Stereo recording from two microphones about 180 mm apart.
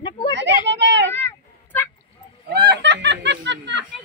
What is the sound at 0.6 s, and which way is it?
Children playing, 75° right (ahead or behind).